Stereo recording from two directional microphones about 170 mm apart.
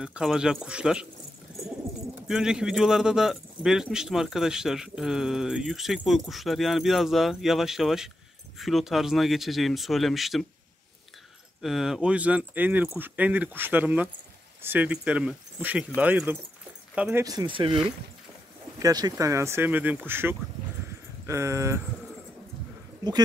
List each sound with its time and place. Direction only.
0.0 s speech: 5° right (ahead or behind)
2.2 s speech: 5° right (ahead or behind)
11.6 s speech: centre (ahead or behind)
17.2 s speech: 25° right (ahead or behind)
18.8 s speech: 20° right (ahead or behind)